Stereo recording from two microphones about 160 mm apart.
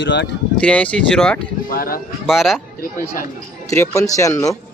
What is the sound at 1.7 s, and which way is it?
Speech, 65° left (ahead or behind).